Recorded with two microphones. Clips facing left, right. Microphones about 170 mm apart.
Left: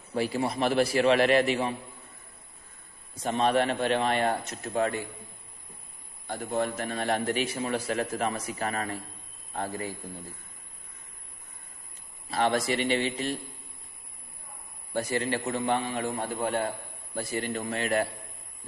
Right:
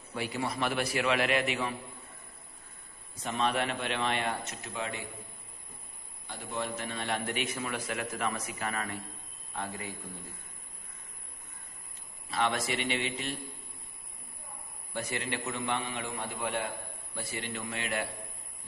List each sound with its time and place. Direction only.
0.1 s a man's voice: 35° left (ahead or behind)
3.2 s a man's voice: 30° left (ahead or behind)
6.2 s a man's voice: 45° left (ahead or behind)
12.3 s a man's voice: 40° left (ahead or behind)
14.9 s a man's voice: 40° left (ahead or behind)